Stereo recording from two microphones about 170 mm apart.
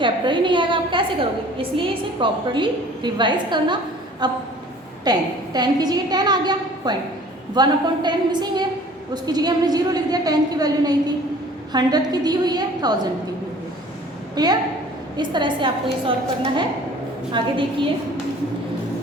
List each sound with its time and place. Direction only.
0.0 s a woman's voice: 30° right (ahead or behind)
14.3 s a woman's voice: 25° right (ahead or behind)
17.4 s a woman's voice: 30° right (ahead or behind)